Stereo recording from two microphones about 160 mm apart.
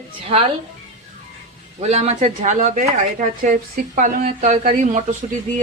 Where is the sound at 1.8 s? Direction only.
45° right (ahead or behind).